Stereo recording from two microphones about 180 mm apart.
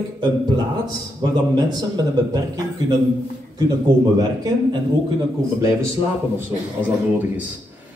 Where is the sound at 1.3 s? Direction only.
25° right (ahead or behind).